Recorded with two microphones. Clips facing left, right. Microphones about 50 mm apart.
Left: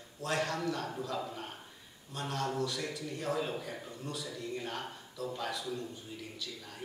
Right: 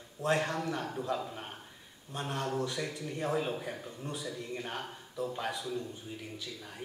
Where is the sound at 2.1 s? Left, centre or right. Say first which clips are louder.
Right 1 dB; right.